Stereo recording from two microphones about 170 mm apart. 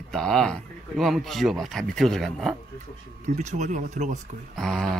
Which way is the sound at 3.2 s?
45° right (ahead or behind).